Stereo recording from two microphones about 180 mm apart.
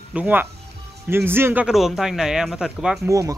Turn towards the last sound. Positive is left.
turn(degrees=-20)  # may be behind; listen again after turning